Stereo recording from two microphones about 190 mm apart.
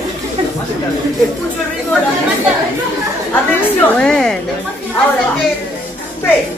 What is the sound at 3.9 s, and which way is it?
Speech, 5° left (ahead or behind).